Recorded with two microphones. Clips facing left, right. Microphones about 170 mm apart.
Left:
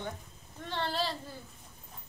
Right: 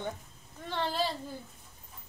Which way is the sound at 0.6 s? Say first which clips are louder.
Right 2 dB; 10° right (ahead or behind).